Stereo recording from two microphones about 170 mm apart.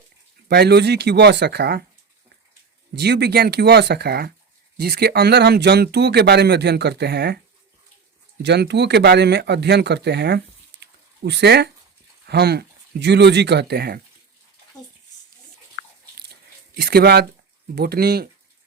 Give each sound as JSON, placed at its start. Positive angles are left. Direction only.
{"t": 0.4, "sound": "speech", "side_deg": -70}
{"t": 3.0, "sound": "speech", "side_deg": -75}
{"t": 15.8, "sound": "biting", "side_deg": 65}
{"t": 16.7, "sound": "speech", "side_deg": -70}